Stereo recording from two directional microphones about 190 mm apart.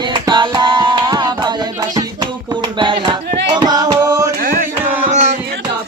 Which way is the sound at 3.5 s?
20° right (ahead or behind).